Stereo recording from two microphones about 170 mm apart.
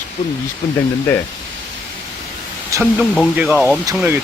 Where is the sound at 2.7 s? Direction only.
20° right (ahead or behind).